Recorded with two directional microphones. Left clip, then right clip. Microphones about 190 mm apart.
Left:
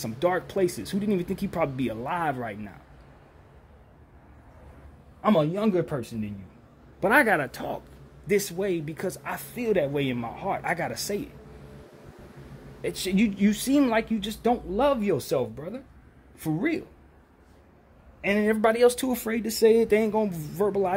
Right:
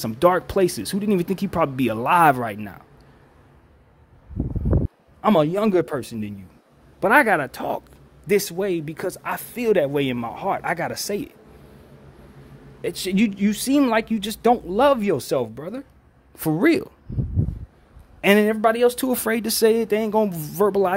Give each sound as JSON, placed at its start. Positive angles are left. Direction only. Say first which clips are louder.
{"t": 0.0, "sound": "speech", "louder": "right 8 dB", "side_deg": -20}
{"t": 5.2, "sound": "a man's voice", "louder": "right 5 dB", "side_deg": -30}
{"t": 7.0, "sound": "speech", "louder": "right 4 dB", "side_deg": -20}
{"t": 8.3, "sound": "speech", "louder": "right 5 dB", "side_deg": -30}
{"t": 10.6, "sound": "speech", "louder": "right 4 dB", "side_deg": -20}
{"t": 12.8, "sound": "speech", "louder": "right 4 dB", "side_deg": -20}
{"t": 18.2, "sound": "speech", "louder": "right 9 dB", "side_deg": -30}
{"t": 18.5, "sound": "speech", "louder": "right 2 dB", "side_deg": -10}
{"t": 19.1, "sound": "speech", "louder": "right 6 dB", "side_deg": -25}
{"t": 19.7, "sound": "speech", "louder": "even", "side_deg": -10}
{"t": 20.1, "sound": "speech", "louder": "right 6 dB", "side_deg": -20}